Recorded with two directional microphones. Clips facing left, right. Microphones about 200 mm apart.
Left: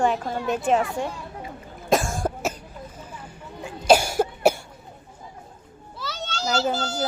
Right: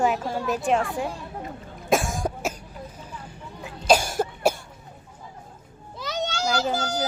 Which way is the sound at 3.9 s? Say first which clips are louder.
Left 3 dB; 5° left (ahead or behind).